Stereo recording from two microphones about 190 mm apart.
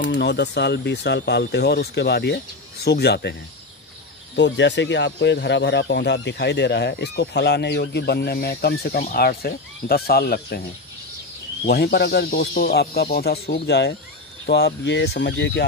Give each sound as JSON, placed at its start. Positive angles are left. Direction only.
{"t": 0.1, "sound": "speech", "side_deg": 65}
{"t": 4.4, "sound": "speech", "side_deg": 70}
{"t": 11.6, "sound": "speech", "side_deg": 55}